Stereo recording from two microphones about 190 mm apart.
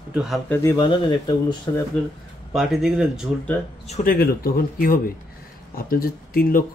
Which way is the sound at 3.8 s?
35° left (ahead or behind).